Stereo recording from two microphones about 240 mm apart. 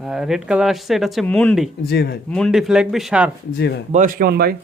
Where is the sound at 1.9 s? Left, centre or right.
Left.